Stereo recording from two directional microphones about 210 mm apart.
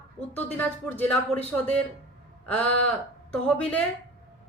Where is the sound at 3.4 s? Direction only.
5° left (ahead or behind).